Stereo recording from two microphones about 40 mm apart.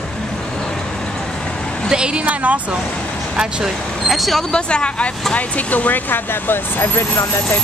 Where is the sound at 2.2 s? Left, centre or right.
Right.